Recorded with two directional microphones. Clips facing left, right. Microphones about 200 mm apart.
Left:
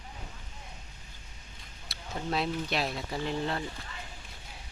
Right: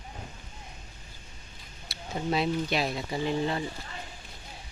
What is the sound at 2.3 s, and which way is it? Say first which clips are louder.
Speech: right 3 dB; centre (ahead or behind).